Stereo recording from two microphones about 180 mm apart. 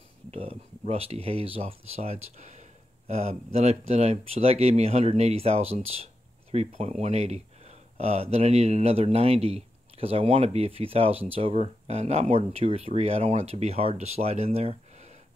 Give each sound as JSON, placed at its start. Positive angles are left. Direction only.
{"t": 0.3, "sound": "speech", "side_deg": -35}